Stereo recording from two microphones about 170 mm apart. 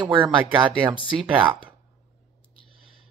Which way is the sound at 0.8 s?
15° right (ahead or behind).